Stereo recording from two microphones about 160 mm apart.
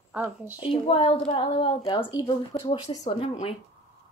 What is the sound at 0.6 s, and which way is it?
Speech, 35° left (ahead or behind).